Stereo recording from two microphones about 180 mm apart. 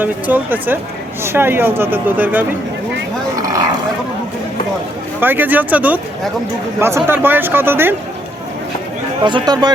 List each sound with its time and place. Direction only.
0.0 s speech: 10° right (ahead or behind)
5.2 s speech: 10° right (ahead or behind)
9.2 s speech: 25° right (ahead or behind)